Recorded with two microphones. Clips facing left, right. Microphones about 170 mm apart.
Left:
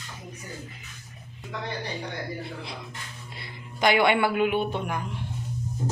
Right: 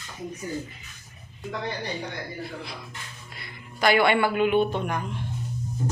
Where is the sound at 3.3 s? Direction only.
30° left (ahead or behind).